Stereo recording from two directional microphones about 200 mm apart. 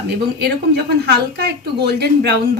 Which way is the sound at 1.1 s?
55° right (ahead or behind).